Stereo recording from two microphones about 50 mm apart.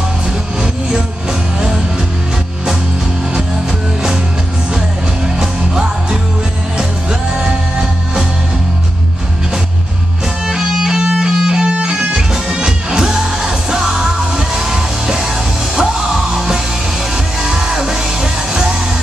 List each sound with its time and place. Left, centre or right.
5.4 s music: centre
10.4 s music: centre